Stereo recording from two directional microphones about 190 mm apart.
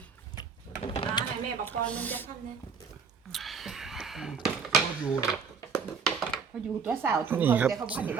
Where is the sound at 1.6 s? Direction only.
10° left (ahead or behind).